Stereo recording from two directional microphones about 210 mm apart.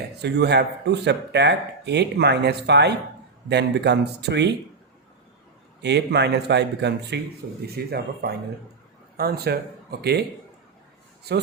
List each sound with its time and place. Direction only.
0.2 s speech: 55° right (ahead or behind)
5.8 s speech: 55° right (ahead or behind)